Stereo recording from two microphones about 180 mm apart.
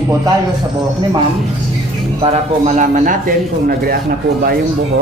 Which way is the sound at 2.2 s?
40° right (ahead or behind).